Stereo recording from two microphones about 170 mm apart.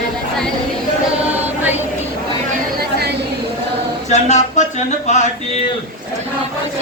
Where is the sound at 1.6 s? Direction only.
10° right (ahead or behind).